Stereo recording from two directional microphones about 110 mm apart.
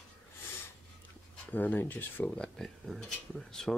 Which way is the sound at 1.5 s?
15° left (ahead or behind).